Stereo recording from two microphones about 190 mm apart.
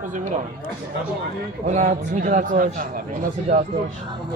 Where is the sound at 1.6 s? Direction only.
40° right (ahead or behind).